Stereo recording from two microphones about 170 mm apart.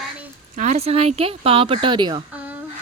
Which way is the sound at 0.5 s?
40° right (ahead or behind).